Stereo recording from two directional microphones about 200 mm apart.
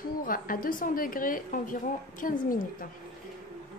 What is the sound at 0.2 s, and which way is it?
A woman's voice, 45° left (ahead or behind).